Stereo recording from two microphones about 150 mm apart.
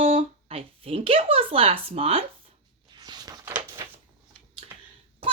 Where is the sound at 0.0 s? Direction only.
40° right (ahead or behind).